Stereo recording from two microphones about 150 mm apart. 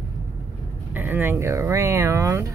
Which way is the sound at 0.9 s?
15° right (ahead or behind).